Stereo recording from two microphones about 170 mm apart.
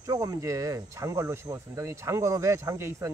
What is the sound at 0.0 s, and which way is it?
Speech, 20° right (ahead or behind).